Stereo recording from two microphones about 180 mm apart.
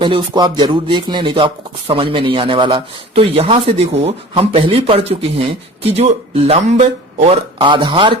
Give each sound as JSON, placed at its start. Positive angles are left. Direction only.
{"t": 0.0, "sound": "speech", "side_deg": -25}